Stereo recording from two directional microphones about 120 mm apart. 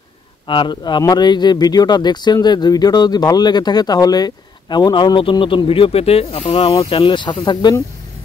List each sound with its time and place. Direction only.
0.5 s speech: 40° left (ahead or behind)